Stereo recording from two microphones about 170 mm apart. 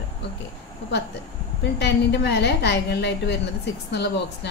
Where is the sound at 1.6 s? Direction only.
85° left.